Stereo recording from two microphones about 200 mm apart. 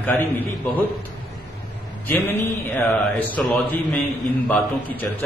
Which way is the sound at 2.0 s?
10° left (ahead or behind).